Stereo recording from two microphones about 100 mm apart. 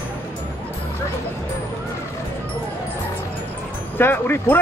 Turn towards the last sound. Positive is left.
turn(degrees=20)  # may be behind; listen again after turning